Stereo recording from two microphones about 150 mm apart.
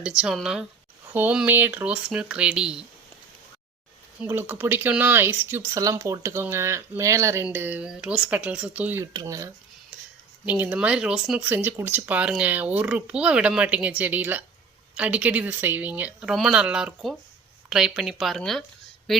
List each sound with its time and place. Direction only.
0.0 s speech: 5° right (ahead or behind)
4.2 s speech: 15° right (ahead or behind)
10.4 s speech: 10° right (ahead or behind)